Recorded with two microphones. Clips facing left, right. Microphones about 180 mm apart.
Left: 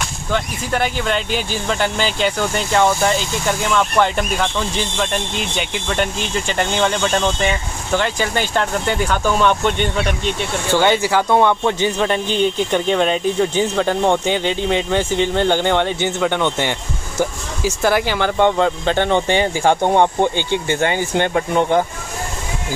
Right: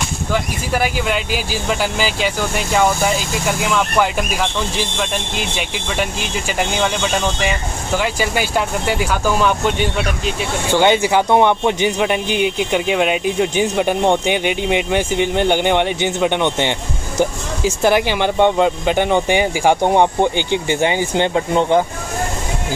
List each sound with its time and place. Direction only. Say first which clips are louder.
0.3 s speech: even; 5° right (ahead or behind)
10.8 s speech: right 3 dB; 15° right (ahead or behind)